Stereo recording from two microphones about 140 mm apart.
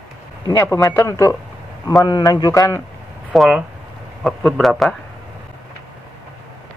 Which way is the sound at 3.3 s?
5° right (ahead or behind).